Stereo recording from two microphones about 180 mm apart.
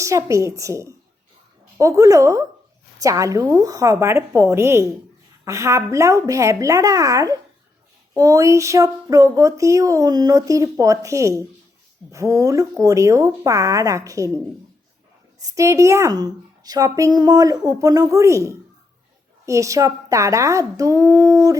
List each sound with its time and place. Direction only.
0.0 s speech: 15° right (ahead or behind)
15.4 s a woman's voice: 20° right (ahead or behind)